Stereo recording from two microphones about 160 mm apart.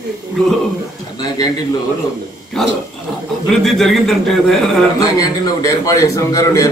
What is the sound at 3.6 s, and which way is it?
A man's voice, centre (ahead or behind).